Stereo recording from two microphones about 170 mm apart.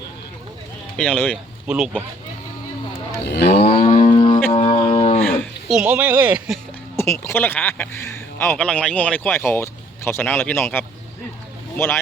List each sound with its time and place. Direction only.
0.9 s speech: 5° left (ahead or behind)
1.6 s speech: 5° right (ahead or behind)
3.2 s cattle: 85° left
3.5 s cattle: 35° left (ahead or behind)
4.0 s music: 30° left (ahead or behind)
4.5 s a sound: 35° left (ahead or behind)
5.3 s a sound: 5° left (ahead or behind)
6.9 s speech: 15° left (ahead or behind)